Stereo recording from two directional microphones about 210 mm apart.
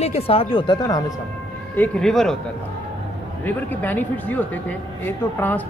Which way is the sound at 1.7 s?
5° left (ahead or behind).